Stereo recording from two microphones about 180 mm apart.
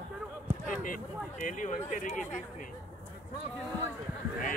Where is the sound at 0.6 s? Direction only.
50° left (ahead or behind).